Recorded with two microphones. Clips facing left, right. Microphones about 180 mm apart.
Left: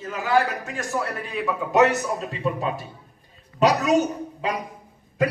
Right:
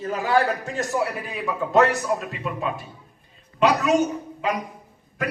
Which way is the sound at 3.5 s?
40° left (ahead or behind).